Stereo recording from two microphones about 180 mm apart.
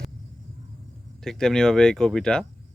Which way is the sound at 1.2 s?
5° left (ahead or behind).